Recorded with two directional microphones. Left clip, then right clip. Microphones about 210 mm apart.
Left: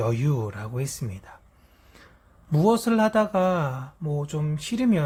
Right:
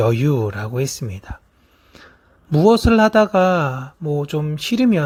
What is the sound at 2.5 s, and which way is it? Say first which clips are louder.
Speech: right 8 dB; 25° right (ahead or behind).